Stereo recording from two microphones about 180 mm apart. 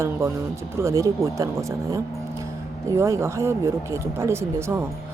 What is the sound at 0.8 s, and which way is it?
Speech, 15° right (ahead or behind).